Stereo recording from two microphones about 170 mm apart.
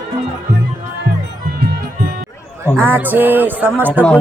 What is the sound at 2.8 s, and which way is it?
Music, 10° right (ahead or behind).